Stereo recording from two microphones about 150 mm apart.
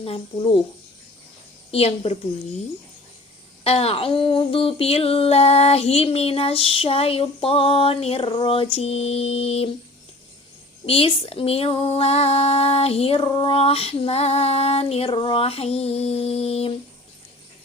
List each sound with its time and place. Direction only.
0.0 s female singing: 35° left (ahead or behind)
1.7 s female singing: 40° left (ahead or behind)
3.6 s female singing: 40° left (ahead or behind)
8.7 s mantra: 45° left (ahead or behind)
10.8 s female singing: 40° left (ahead or behind)